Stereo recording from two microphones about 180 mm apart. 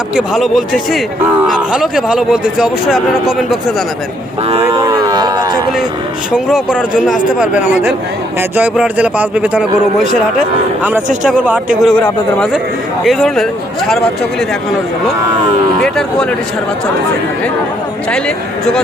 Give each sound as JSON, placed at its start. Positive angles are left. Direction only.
{"t": 0.2, "sound": "speech", "side_deg": 0}
{"t": 4.6, "sound": "speech", "side_deg": -20}
{"t": 6.3, "sound": "a man's voice", "side_deg": -5}
{"t": 11.3, "sound": "a man's voice", "side_deg": -10}
{"t": 11.8, "sound": "speech", "side_deg": 5}